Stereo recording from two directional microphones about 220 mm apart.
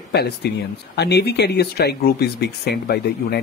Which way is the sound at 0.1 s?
50° left (ahead or behind).